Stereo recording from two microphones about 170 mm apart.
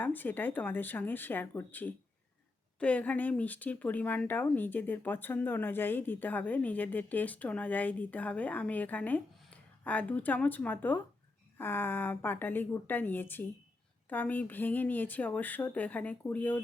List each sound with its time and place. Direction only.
0.0 s speech: 10° left (ahead or behind)